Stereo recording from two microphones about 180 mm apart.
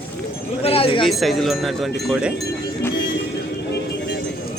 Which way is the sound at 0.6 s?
30° left (ahead or behind).